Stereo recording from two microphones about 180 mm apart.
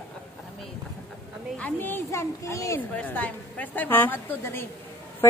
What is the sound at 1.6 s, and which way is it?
A woman's voice, 10° left (ahead or behind).